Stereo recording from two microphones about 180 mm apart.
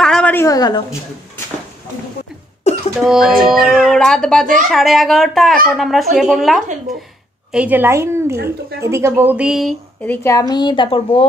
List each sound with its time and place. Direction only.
0.0 s a woman's voice: 5° left (ahead or behind); by 0.8 s 20° left (ahead or behind)
2.7 s music: 40° left (ahead or behind)
3.0 s speech: centre (ahead or behind)
10.0 s speech: 15° left (ahead or behind)
10.5 s speech: 25° left (ahead or behind)